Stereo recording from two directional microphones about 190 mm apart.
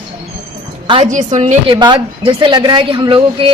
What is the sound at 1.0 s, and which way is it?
Speech, 40° right (ahead or behind).